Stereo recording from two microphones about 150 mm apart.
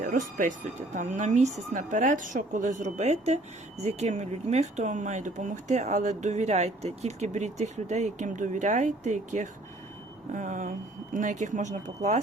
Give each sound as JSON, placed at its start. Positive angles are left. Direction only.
{"t": 0.0, "sound": "a woman's voice", "side_deg": -60}